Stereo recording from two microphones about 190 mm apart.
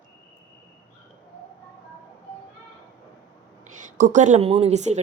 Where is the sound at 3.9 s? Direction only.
40° right (ahead or behind).